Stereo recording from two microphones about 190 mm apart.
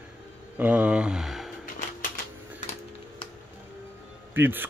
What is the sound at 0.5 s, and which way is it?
Speech, 10° right (ahead or behind).